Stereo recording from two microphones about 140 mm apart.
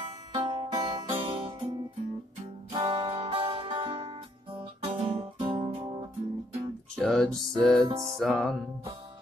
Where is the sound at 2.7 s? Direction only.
40° right (ahead or behind).